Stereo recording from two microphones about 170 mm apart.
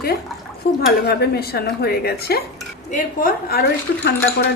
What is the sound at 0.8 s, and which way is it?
A woman's voice, 65° left (ahead or behind).